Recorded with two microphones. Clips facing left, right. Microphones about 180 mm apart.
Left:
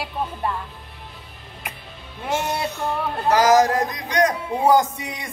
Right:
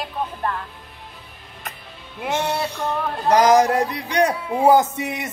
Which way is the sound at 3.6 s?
10° right (ahead or behind).